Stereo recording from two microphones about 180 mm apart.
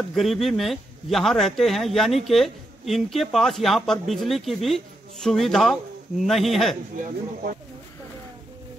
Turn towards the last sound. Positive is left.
turn(degrees=-50)  # may be behind; listen again after turning